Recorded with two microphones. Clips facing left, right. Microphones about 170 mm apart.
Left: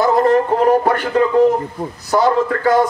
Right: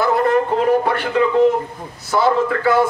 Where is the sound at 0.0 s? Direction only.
35° left (ahead or behind).